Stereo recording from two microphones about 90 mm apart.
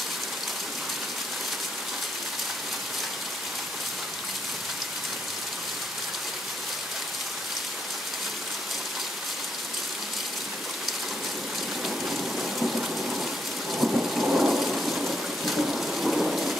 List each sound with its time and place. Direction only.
11.8 s rain: centre (ahead or behind)